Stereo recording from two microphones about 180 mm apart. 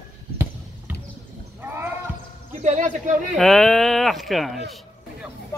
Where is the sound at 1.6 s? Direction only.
10° right (ahead or behind).